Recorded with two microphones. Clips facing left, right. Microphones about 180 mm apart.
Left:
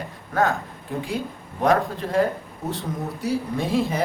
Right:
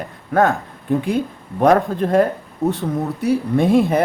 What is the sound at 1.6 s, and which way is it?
Speech, 55° right (ahead or behind).